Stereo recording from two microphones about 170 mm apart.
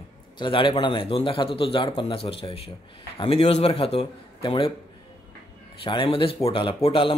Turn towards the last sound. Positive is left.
turn(degrees=30)  # may be behind; listen again after turning